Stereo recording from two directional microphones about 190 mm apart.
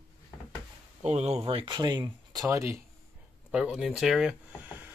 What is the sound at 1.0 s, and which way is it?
Speech, 35° right (ahead or behind).